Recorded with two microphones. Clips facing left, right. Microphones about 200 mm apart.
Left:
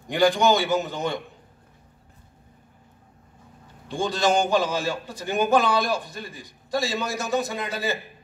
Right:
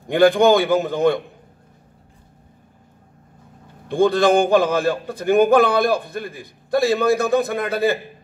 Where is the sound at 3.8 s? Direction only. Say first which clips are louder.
Right 8 dB; 55° right (ahead or behind).